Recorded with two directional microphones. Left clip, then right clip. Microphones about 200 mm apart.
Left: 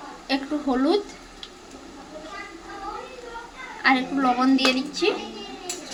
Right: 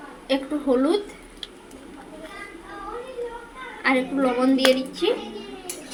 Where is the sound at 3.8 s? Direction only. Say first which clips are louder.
Left 1 dB; 10° left (ahead or behind).